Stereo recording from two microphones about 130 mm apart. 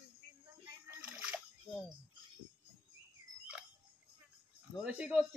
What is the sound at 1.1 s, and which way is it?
Splash, 5° right (ahead or behind).